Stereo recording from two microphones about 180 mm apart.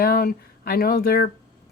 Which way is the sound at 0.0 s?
55° left (ahead or behind).